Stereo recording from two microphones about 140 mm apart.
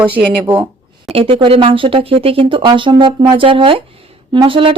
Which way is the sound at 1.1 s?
40° right (ahead or behind).